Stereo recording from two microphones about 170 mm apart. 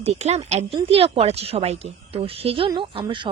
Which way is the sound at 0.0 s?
40° right (ahead or behind).